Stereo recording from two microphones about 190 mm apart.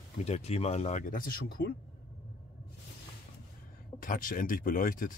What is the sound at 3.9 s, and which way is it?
Speech, 45° left (ahead or behind).